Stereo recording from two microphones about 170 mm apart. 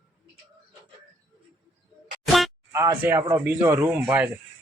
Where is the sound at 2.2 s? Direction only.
Centre (ahead or behind).